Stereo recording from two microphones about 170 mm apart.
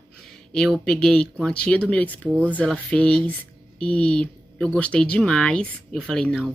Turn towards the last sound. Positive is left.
turn(degrees=5)  # may be behind; listen again after turning